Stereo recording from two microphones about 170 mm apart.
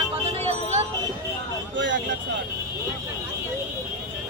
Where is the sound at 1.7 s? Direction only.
90° right.